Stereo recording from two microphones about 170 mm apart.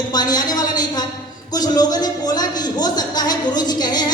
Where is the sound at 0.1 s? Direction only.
25° left (ahead or behind).